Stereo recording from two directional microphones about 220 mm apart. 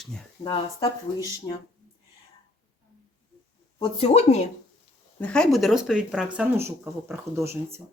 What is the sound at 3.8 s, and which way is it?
Speech, 25° left (ahead or behind).